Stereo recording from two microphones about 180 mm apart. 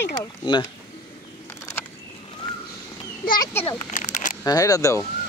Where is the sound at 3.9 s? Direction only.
45° left (ahead or behind).